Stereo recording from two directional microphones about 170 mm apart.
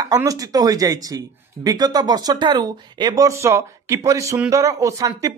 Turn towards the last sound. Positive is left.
turn(degrees=-20)  # may be behind; listen again after turning